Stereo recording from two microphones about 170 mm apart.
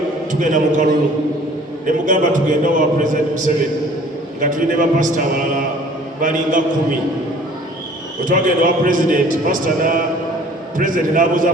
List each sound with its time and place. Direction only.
0.3 s a man's voice: 50° right (ahead or behind)
8.2 s a man's voice: 50° right (ahead or behind)